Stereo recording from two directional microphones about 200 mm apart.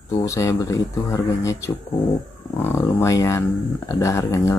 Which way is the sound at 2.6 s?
10° left (ahead or behind).